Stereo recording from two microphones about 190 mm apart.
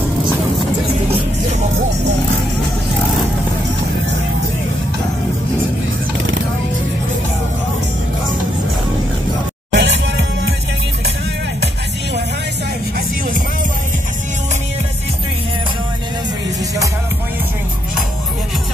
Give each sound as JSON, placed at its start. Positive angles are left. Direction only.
{"t": 9.7, "sound": "music", "side_deg": -65}